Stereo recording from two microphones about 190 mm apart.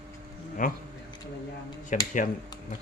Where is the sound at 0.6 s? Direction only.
45° left (ahead or behind).